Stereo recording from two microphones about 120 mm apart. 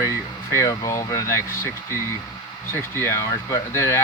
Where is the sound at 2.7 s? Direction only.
20° left (ahead or behind).